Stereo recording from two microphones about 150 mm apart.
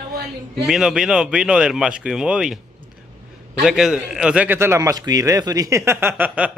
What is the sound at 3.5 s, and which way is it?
A man's voice, 5° right (ahead or behind).